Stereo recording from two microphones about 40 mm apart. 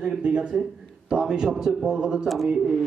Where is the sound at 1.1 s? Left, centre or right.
Centre.